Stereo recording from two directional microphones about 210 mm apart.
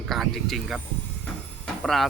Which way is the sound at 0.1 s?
Centre (ahead or behind).